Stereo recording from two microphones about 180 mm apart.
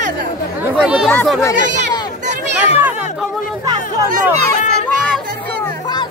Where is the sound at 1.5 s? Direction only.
45° right (ahead or behind).